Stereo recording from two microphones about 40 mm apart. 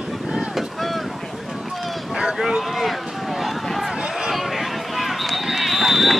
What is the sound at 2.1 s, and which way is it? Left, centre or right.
Boat, centre.